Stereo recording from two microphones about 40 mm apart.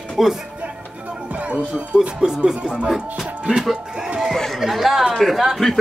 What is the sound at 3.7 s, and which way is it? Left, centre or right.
Music, right.